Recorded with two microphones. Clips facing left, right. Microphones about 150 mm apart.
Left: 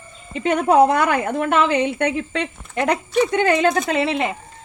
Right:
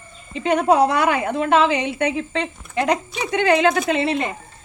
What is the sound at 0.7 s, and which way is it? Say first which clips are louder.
A woman's voice: left 3 dB; 50° left (ahead or behind).